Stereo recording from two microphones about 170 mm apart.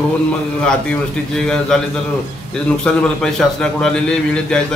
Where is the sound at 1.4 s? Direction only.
5° left (ahead or behind).